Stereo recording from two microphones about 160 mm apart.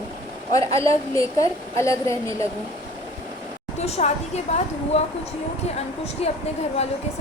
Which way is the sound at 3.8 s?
45° left (ahead or behind).